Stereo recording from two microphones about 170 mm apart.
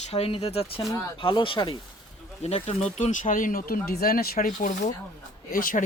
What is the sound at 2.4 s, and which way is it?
Speech, 40° left (ahead or behind).